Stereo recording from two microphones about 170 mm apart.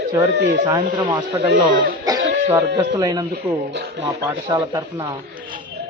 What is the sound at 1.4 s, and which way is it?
Speech, 90° right.